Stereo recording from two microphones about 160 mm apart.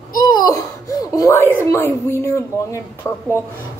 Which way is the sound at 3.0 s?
15° left (ahead or behind).